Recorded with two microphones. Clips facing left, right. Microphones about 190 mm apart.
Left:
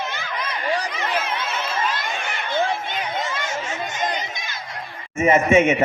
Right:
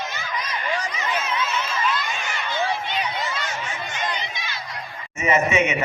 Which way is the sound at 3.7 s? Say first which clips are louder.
Left 3 dB; 45° left (ahead or behind).